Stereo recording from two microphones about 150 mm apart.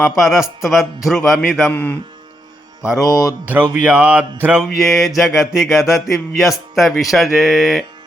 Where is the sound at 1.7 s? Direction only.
10° left (ahead or behind).